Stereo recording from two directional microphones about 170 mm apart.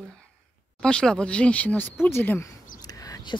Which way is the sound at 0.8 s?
5° left (ahead or behind).